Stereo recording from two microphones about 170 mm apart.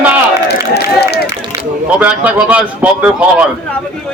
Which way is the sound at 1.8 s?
10° right (ahead or behind).